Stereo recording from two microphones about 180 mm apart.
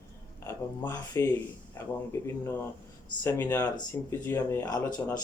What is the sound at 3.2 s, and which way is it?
Speech, 10° left (ahead or behind).